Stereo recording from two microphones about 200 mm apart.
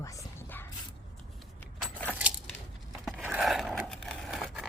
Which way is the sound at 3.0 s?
Centre (ahead or behind).